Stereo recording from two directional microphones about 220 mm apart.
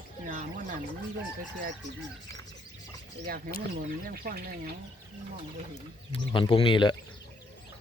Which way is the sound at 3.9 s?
40° right (ahead or behind).